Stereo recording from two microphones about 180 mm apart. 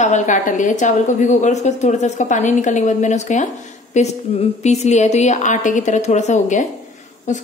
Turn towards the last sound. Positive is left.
turn(degrees=40)  # may be behind; listen again after turning